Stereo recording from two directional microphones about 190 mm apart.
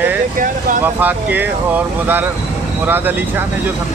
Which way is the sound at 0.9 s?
10° right (ahead or behind).